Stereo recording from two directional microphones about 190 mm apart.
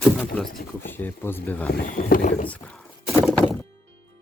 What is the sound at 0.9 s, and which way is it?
Speech, 10° left (ahead or behind).